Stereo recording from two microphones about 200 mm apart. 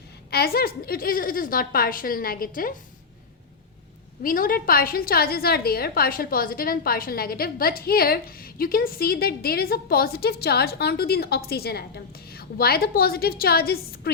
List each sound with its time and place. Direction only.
0.3 s a woman's voice: 50° left (ahead or behind)
4.2 s a woman's voice: 45° left (ahead or behind)